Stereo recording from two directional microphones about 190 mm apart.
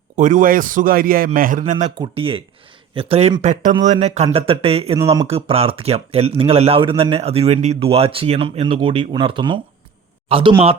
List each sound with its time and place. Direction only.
0.2 s a man's voice: 40° right (ahead or behind)
2.0 s speech: 30° right (ahead or behind)